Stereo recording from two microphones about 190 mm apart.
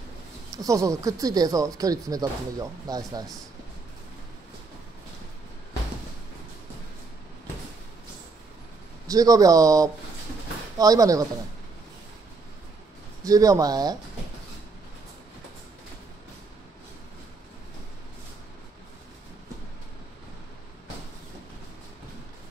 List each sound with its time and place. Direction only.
0.5 s speech: 20° right (ahead or behind)
9.0 s speech: 20° right (ahead or behind)
13.2 s speech: 20° right (ahead or behind)